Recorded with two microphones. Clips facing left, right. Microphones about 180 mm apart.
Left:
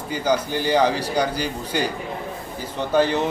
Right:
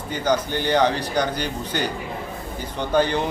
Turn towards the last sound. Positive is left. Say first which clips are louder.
# left 1 dB
turn(degrees=5)  # may be behind; listen again after turning